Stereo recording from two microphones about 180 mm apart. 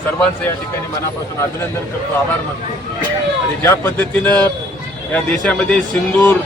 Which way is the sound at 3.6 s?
15° left (ahead or behind).